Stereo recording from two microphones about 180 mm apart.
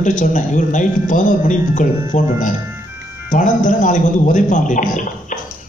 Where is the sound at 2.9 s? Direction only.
10° right (ahead or behind).